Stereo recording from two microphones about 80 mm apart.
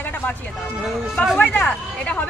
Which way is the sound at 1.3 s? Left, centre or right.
Centre.